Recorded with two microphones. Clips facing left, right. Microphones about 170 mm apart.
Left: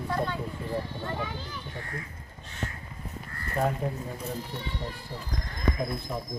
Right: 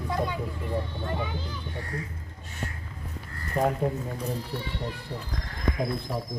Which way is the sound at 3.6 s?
Centre (ahead or behind).